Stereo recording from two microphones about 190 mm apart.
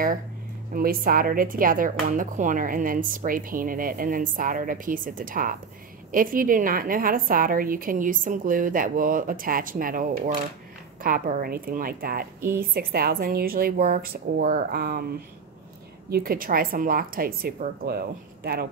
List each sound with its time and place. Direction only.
0.7 s speech: 50° right (ahead or behind)
16.1 s speech: 50° right (ahead or behind)